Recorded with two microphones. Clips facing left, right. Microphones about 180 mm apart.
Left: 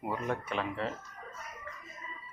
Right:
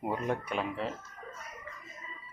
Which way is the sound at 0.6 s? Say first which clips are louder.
Even; 5° right (ahead or behind).